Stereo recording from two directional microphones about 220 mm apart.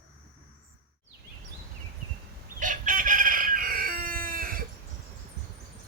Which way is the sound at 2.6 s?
35° right (ahead or behind).